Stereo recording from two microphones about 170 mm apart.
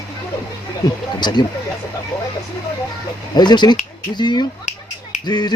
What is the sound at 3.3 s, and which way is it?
Speech, 25° left (ahead or behind).